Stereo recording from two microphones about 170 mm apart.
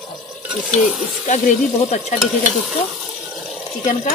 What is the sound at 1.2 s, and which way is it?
Speech, 45° left (ahead or behind).